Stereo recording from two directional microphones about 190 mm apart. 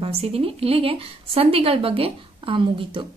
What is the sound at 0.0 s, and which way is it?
A woman's voice, 30° right (ahead or behind).